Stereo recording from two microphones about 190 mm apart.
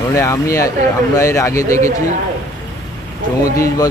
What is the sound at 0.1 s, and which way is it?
Speech, 15° left (ahead or behind).